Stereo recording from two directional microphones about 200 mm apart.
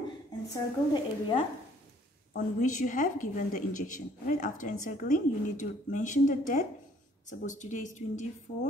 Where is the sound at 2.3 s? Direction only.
45° left (ahead or behind).